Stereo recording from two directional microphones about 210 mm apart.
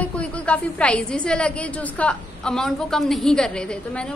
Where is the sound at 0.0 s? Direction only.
5° left (ahead or behind).